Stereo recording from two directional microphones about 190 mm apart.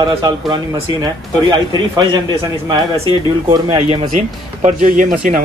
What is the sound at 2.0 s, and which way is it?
A man's voice, 20° right (ahead or behind).